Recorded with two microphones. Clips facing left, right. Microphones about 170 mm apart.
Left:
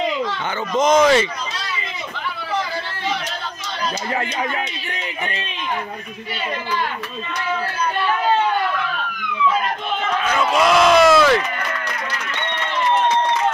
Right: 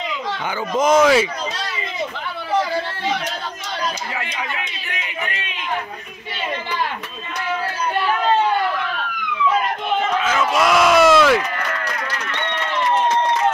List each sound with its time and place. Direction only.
0.7 s speech: 5° right (ahead or behind)
4.1 s speech: 40° left (ahead or behind)
10.2 s a sound: centre (ahead or behind)